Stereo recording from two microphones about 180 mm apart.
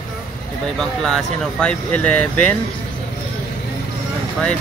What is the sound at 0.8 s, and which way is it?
Speech, 5° left (ahead or behind).